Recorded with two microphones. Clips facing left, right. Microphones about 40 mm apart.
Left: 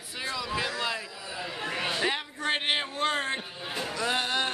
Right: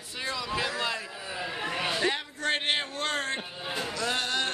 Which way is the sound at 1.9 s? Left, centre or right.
Centre.